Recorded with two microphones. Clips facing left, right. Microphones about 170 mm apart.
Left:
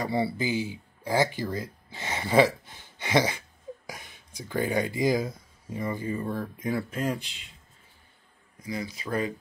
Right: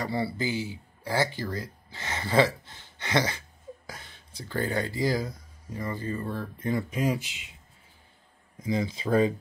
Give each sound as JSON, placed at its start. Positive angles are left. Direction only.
{"t": 0.0, "sound": "speech", "side_deg": 20}
{"t": 6.9, "sound": "speech", "side_deg": -5}
{"t": 8.6, "sound": "speech", "side_deg": -25}